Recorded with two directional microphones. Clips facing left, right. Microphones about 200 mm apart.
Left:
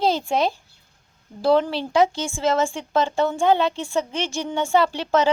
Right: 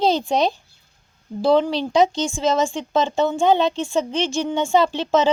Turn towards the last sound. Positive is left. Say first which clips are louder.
# right 2 dB
turn(degrees=-20)  # may be behind; listen again after turning